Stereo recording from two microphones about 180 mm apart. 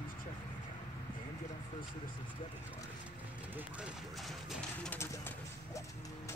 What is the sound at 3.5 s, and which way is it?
Speech, 5° right (ahead or behind).